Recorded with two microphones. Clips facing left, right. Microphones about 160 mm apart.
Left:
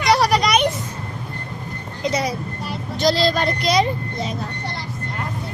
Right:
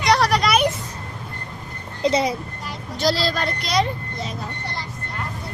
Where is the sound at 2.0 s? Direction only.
25° right (ahead or behind).